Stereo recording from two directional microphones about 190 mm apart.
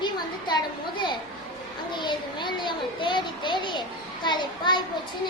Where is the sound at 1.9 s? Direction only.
25° left (ahead or behind).